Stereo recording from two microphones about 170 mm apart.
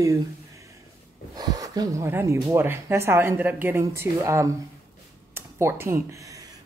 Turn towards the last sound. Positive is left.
turn(degrees=-20)  # may be behind; listen again after turning